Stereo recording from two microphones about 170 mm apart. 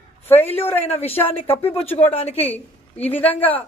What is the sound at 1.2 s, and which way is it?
Speech, 10° left (ahead or behind).